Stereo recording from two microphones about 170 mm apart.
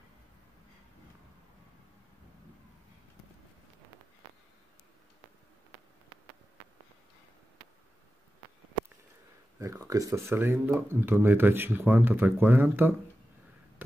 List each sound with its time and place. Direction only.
9.6 s speech: 20° right (ahead or behind)